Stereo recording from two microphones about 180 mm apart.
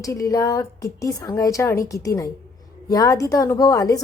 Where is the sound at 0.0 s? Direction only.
20° left (ahead or behind).